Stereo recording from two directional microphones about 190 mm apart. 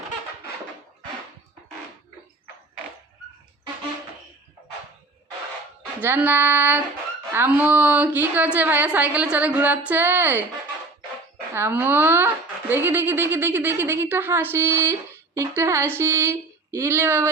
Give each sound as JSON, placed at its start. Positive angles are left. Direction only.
{"t": 6.0, "sound": "speech", "side_deg": -10}
{"t": 11.5, "sound": "speech", "side_deg": -10}